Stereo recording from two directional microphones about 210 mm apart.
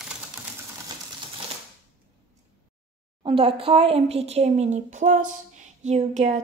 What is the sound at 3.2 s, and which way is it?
Speech, 25° right (ahead or behind).